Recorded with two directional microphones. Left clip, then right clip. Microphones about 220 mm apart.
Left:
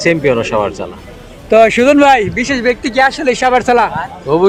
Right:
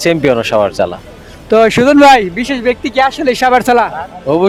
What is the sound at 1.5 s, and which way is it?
Speech, 30° right (ahead or behind).